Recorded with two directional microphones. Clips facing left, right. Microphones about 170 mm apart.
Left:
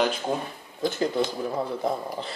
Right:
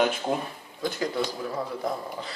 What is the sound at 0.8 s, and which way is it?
Speech, 25° left (ahead or behind).